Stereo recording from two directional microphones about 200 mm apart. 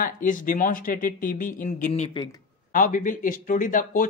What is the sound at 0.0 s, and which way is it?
Speech, 40° left (ahead or behind).